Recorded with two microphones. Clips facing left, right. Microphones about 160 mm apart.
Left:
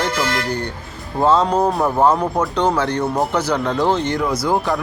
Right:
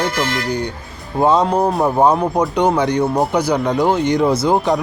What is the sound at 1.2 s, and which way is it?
A man's voice, 15° right (ahead or behind).